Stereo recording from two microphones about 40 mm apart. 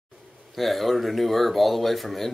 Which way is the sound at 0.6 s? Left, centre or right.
Centre.